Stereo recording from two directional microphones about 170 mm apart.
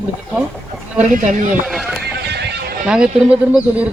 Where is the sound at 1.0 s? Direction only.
50° right (ahead or behind).